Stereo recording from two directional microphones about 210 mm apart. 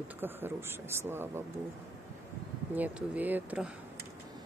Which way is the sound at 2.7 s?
10° right (ahead or behind).